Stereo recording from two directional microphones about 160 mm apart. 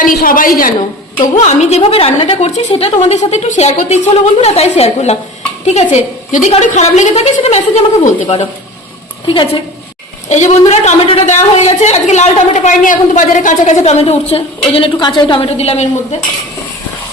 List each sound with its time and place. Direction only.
0.0 s a woman's voice: 60° left (ahead or behind)
1.2 s a woman's voice: 45° left (ahead or behind)
10.2 s a woman's voice: 45° left (ahead or behind)